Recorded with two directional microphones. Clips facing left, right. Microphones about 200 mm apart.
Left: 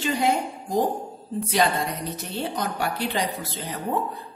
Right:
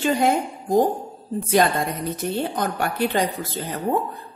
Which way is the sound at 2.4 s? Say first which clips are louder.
Even; 50° right (ahead or behind).